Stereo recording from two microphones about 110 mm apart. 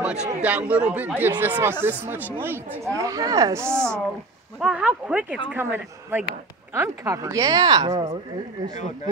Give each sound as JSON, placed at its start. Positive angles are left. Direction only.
{"t": 0.0, "sound": "a sound", "side_deg": -5}
{"t": 0.4, "sound": "speech", "side_deg": -15}
{"t": 3.0, "sound": "speech", "side_deg": -30}
{"t": 4.6, "sound": "speech", "side_deg": -10}